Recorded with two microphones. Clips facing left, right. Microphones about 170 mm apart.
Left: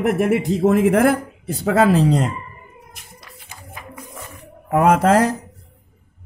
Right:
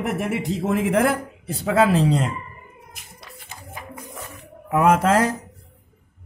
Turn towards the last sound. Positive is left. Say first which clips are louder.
# left 3 dB
turn(degrees=40)  # may be behind; listen again after turning